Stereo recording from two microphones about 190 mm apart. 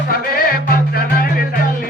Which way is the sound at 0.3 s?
50° left (ahead or behind).